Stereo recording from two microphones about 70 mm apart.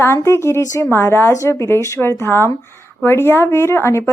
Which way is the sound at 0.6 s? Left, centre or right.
Left.